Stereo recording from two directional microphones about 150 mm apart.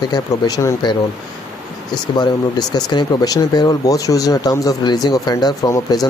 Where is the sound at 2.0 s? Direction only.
25° left (ahead or behind).